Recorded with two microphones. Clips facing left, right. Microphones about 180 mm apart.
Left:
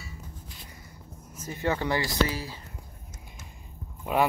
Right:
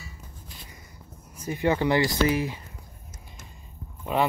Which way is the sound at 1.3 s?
15° right (ahead or behind).